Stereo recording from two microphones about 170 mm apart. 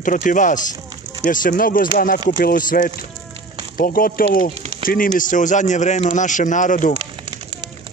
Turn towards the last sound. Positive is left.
turn(degrees=-35)  # may be behind; listen again after turning